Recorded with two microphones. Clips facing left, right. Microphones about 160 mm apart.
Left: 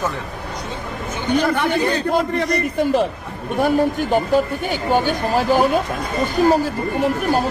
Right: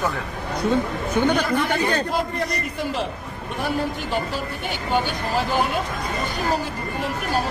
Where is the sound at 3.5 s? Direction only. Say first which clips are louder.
Left 8 dB; 45° left (ahead or behind).